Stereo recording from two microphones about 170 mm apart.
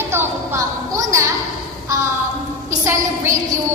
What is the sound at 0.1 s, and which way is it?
A woman's voice, 15° right (ahead or behind).